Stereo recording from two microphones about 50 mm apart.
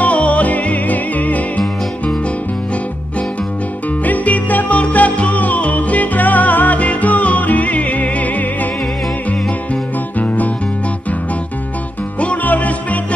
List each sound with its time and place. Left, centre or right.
0.0 s music: left
4.0 s music: left
10.1 s music: left
12.2 s music: left